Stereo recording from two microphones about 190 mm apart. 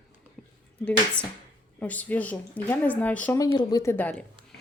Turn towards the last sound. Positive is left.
turn(degrees=10)  # may be behind; listen again after turning